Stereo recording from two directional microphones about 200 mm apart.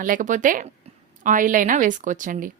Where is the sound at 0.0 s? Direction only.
40° right (ahead or behind).